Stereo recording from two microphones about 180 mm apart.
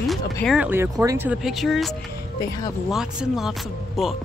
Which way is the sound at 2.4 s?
20° left (ahead or behind).